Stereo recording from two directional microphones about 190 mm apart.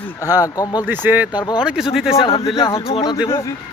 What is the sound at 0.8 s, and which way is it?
Speech, 10° right (ahead or behind).